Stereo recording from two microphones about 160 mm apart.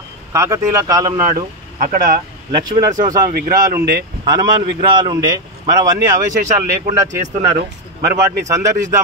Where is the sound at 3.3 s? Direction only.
60° right (ahead or behind).